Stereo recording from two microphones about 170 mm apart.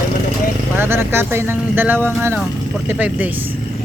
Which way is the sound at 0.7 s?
15° right (ahead or behind).